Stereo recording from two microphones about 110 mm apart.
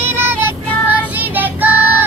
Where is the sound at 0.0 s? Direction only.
20° right (ahead or behind).